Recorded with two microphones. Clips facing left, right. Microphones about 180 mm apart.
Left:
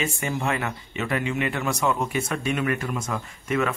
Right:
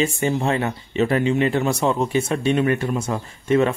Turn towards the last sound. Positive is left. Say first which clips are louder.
# right 7 dB
turn(degrees=-30)  # may be behind; listen again after turning